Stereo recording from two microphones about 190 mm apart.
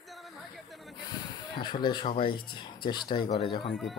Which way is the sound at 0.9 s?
20° left (ahead or behind).